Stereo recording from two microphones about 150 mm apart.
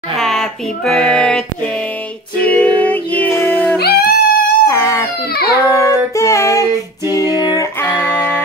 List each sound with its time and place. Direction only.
0.1 s female singing: centre (ahead or behind)
2.4 s music: 10° left (ahead or behind)
3.8 s music: 90° left
4.6 s a sound: 20° left (ahead or behind)
5.7 s child singing: 20° left (ahead or behind)
7.3 s music: 25° left (ahead or behind)